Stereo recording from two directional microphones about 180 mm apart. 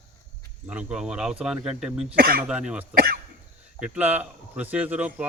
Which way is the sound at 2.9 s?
55° right (ahead or behind).